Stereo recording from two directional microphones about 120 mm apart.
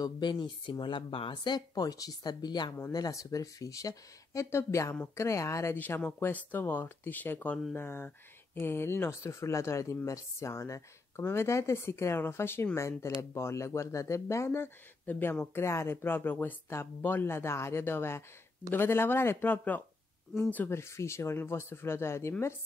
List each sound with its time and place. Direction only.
0.0 s speech: 40° left (ahead or behind); by 22.3 s 20° left (ahead or behind)